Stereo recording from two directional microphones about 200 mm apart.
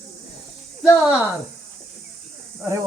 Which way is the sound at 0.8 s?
5° right (ahead or behind).